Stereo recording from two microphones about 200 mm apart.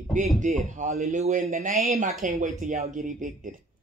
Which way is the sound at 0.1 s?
40° right (ahead or behind).